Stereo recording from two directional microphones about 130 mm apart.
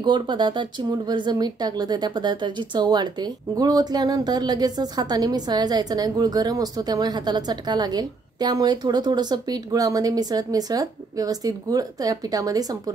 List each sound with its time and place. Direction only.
0.0 s speech: 35° right (ahead or behind)